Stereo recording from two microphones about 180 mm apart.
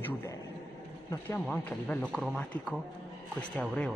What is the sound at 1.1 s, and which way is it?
A man's voice, 10° left (ahead or behind).